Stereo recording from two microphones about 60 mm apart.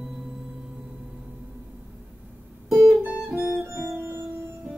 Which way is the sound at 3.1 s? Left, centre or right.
Centre.